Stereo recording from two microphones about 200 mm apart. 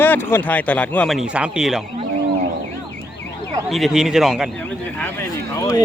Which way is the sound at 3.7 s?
Centre (ahead or behind).